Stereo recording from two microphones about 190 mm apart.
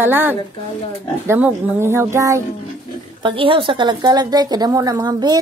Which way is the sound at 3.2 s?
25° right (ahead or behind).